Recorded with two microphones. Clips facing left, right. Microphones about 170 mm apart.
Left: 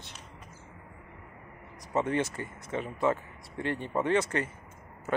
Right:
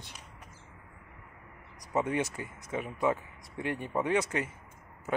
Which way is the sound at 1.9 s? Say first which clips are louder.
Left 1 dB; 10° right (ahead or behind).